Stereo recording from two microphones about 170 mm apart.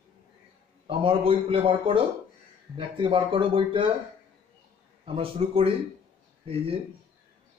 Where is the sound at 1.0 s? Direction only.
30° right (ahead or behind).